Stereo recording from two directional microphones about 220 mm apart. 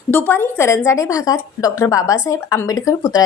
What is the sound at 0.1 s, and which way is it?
A woman's voice, 10° left (ahead or behind).